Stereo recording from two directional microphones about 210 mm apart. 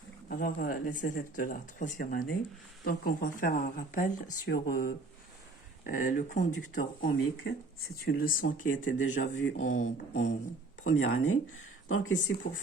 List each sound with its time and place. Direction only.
0.3 s speech: 40° left (ahead or behind)
8.8 s speech: 65° left (ahead or behind)
9.7 s speech: 35° left (ahead or behind)
10.8 s speech: 65° left (ahead or behind)